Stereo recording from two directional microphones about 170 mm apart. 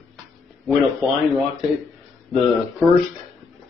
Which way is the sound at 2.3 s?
Centre (ahead or behind).